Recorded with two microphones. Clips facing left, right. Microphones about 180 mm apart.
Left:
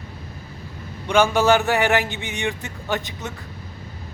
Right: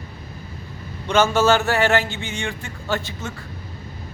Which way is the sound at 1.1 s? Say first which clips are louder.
Even; 15° left (ahead or behind).